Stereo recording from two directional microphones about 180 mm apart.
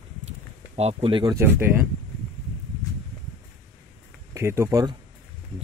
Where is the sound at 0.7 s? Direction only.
35° right (ahead or behind).